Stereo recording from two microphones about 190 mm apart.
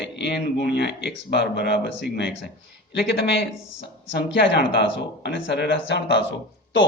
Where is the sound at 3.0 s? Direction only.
65° left (ahead or behind).